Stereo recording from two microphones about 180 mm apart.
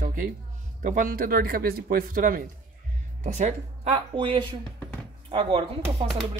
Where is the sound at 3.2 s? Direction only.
40° right (ahead or behind).